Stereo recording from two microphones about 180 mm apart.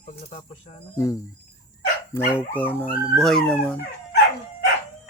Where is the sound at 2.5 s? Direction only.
10° left (ahead or behind).